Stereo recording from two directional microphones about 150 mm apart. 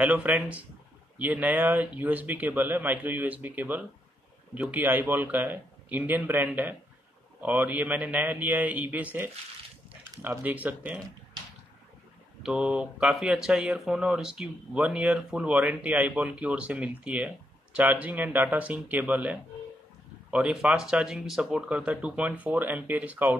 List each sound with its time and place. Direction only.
0.0 s speech: 10° right (ahead or behind)
12.4 s speech: 5° right (ahead or behind)